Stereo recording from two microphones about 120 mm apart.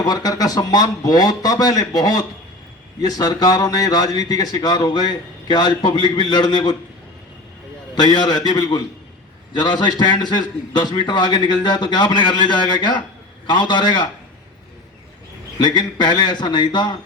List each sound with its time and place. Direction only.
0.0 s a man's voice: 30° left (ahead or behind)
7.9 s a man's voice: 35° left (ahead or behind)
15.5 s a man's voice: 40° left (ahead or behind)